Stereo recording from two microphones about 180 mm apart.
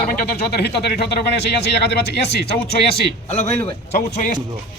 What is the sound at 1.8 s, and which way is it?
Speech, 70° left (ahead or behind).